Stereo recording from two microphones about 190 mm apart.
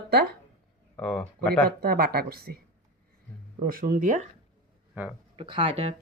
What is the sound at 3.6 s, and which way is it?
Speech, 50° right (ahead or behind).